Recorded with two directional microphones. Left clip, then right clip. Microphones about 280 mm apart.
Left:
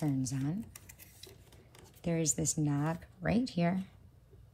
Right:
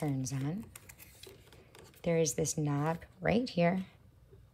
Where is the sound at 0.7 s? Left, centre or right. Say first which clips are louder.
Right 1 dB; centre.